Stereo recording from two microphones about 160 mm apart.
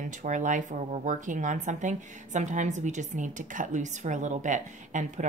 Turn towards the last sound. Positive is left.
turn(degrees=-50)  # may be behind; listen again after turning